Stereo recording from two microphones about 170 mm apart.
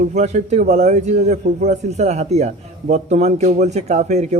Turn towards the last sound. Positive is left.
turn(degrees=-45)  # may be behind; listen again after turning